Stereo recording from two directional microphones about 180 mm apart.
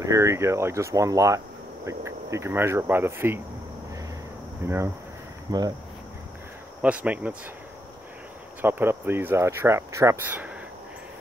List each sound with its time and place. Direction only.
0.0 s speech: 15° right (ahead or behind)
4.6 s speech: 15° right (ahead or behind)
6.8 s speech: 5° right (ahead or behind)
8.5 s speech: 10° right (ahead or behind)